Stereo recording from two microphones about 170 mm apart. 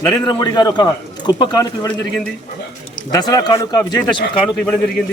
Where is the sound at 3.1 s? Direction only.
20° left (ahead or behind).